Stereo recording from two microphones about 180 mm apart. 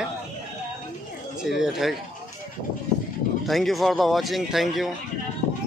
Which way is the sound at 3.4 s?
Centre (ahead or behind).